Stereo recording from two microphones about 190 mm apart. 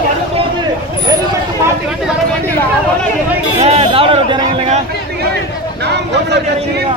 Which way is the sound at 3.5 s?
35° right (ahead or behind).